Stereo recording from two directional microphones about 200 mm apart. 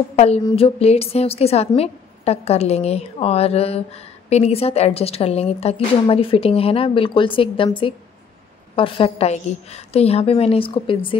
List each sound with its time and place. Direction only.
0.1 s a woman's voice: 30° left (ahead or behind)